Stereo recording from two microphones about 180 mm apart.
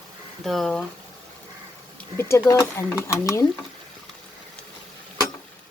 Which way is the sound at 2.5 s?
15° left (ahead or behind).